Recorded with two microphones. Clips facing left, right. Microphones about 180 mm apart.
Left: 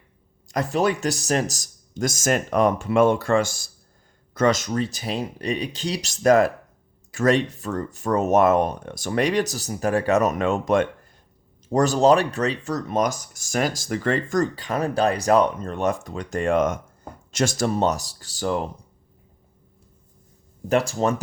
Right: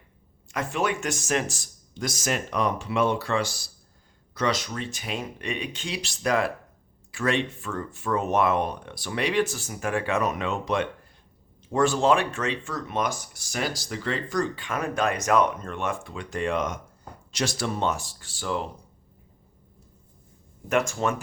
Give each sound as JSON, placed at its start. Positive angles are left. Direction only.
{"t": 0.4, "sound": "speech", "side_deg": 40}
{"t": 20.7, "sound": "speech", "side_deg": 35}